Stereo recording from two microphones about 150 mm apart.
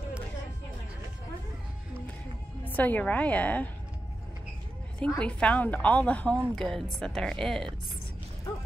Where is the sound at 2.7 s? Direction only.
10° left (ahead or behind).